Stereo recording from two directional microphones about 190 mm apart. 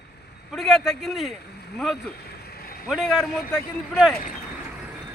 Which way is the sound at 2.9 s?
Centre (ahead or behind).